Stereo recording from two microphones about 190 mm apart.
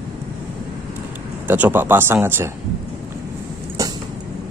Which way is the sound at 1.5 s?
10° right (ahead or behind).